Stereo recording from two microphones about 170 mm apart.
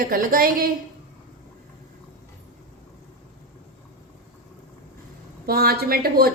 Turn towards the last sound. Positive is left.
turn(degrees=-65)  # may be behind; listen again after turning